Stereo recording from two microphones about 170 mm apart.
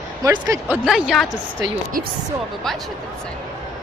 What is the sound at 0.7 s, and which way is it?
Speech, 5° right (ahead or behind).